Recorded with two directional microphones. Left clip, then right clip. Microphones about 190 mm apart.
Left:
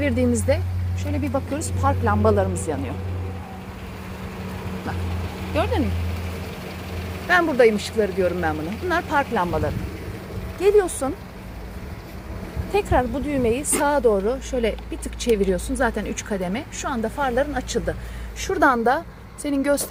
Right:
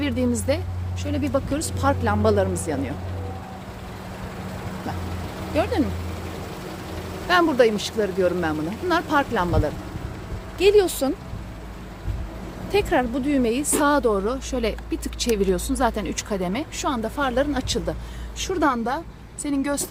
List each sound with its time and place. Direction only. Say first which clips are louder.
0.0 s speech: left 3 dB; 10° right (ahead or behind)
5.6 s speech: even; 15° right (ahead or behind)
7.3 s speech: left 1 dB; 5° right (ahead or behind)
10.8 s speech: right 1 dB; 25° right (ahead or behind)
12.7 s speech: even; 20° right (ahead or behind)
18.3 s a woman's voice: left 4 dB; 15° left (ahead or behind)